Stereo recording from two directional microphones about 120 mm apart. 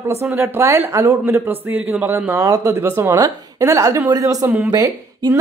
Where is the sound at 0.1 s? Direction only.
20° right (ahead or behind).